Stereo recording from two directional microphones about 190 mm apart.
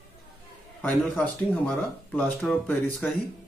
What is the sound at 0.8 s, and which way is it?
A man's voice, 5° left (ahead or behind).